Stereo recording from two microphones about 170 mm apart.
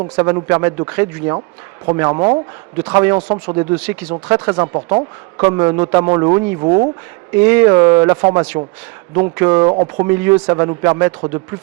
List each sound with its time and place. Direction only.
0.2 s a man's voice: 20° right (ahead or behind)
7.3 s a man's voice: 15° right (ahead or behind)
9.6 s a man's voice: 25° right (ahead or behind)